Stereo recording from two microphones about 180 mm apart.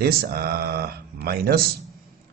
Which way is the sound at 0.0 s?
55° right (ahead or behind).